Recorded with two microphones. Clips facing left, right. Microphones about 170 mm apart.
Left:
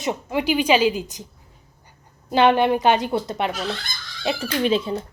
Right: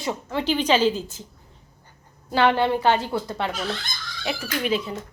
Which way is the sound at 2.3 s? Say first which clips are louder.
Left 3 dB; 20° left (ahead or behind).